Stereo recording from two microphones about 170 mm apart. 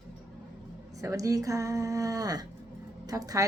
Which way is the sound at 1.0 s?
20° right (ahead or behind).